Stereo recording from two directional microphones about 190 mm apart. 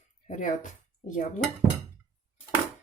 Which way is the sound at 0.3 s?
40° left (ahead or behind).